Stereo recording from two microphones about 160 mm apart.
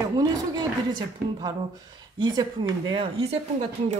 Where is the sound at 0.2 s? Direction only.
25° right (ahead or behind).